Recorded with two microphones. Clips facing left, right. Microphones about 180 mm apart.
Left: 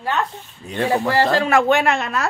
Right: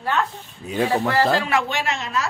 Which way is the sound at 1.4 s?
50° left (ahead or behind).